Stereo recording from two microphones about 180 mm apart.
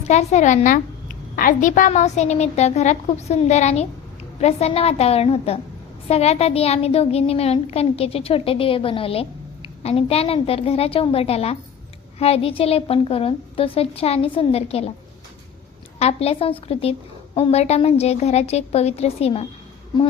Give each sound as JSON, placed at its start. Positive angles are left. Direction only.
{"t": 0.1, "sound": "a child's voice", "side_deg": 40}
{"t": 16.0, "sound": "a child's voice", "side_deg": 35}